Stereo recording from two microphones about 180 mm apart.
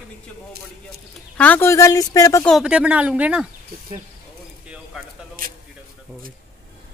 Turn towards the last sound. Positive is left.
turn(degrees=-50)  # may be behind; listen again after turning